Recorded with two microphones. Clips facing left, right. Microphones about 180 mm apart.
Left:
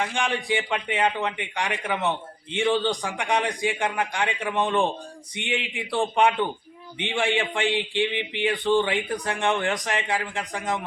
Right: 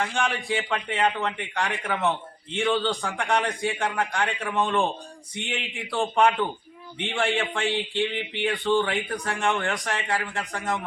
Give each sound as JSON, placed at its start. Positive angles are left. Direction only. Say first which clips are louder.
{"t": 0.0, "sound": "a man's voice", "louder": "even", "side_deg": 15}